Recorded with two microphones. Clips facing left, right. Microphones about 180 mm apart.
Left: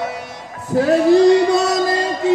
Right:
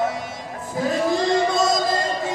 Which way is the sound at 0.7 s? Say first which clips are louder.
Left 9 dB; 70° left (ahead or behind).